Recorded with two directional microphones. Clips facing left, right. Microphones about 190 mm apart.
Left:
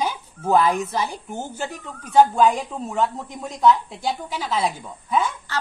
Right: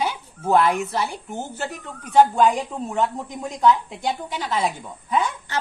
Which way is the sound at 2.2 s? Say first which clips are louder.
Even; 5° right (ahead or behind).